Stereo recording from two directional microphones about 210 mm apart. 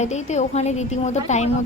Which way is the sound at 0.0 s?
35° left (ahead or behind).